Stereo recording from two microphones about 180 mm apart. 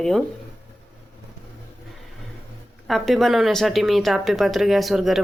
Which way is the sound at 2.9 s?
Centre (ahead or behind).